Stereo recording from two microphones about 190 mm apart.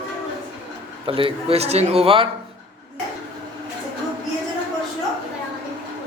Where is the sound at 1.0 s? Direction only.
30° right (ahead or behind).